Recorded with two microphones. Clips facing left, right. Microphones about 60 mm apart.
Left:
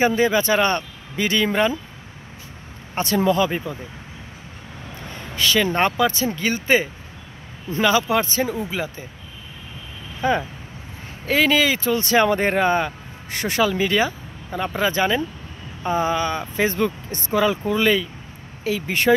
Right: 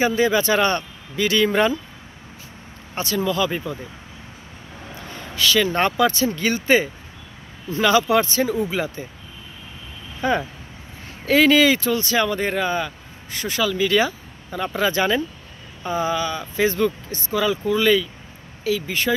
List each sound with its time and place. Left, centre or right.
0.0 s speech: left
1.4 s speech: centre
3.3 s speech: left
5.8 s speech: centre
10.2 s speech: centre
12.0 s speech: left
13.9 s speech: centre
15.8 s speech: left